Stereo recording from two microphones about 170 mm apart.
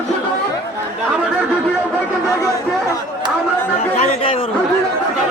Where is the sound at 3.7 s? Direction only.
40° left (ahead or behind).